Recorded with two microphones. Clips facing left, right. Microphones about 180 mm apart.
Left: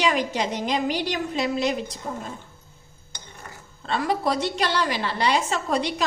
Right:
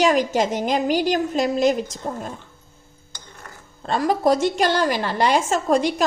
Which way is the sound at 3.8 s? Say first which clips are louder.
Right 5 dB; 45° right (ahead or behind).